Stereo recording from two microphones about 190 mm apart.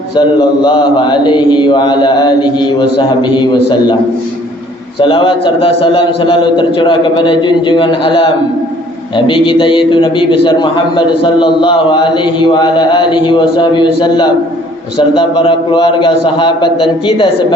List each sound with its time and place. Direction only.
0.6 s a man's voice: 25° left (ahead or behind)
4.9 s a man's voice: 30° left (ahead or behind)